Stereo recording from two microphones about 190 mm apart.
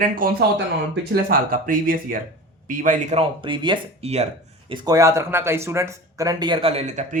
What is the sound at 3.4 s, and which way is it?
Speech, 25° right (ahead or behind).